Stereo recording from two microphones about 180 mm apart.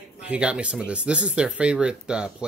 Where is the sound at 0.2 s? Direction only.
5° right (ahead or behind).